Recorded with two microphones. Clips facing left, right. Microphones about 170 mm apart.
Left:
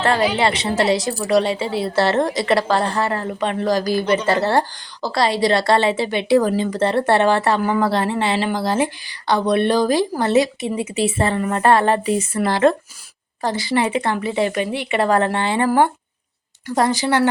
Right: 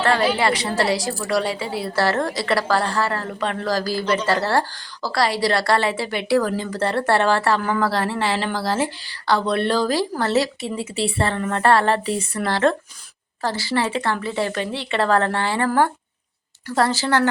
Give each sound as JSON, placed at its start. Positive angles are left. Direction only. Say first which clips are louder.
{"t": 0.1, "sound": "a woman's voice", "louder": "even", "side_deg": 20}